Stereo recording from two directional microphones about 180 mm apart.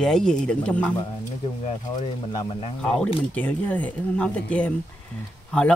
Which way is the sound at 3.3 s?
10° left (ahead or behind).